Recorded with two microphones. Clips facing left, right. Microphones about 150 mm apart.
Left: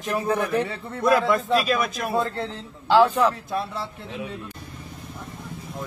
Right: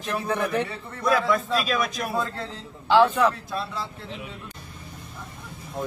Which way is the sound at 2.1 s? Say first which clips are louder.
Left 4 dB; 25° left (ahead or behind).